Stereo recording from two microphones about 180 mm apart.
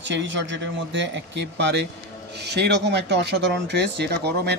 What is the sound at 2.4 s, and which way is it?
Speech, 65° right (ahead or behind).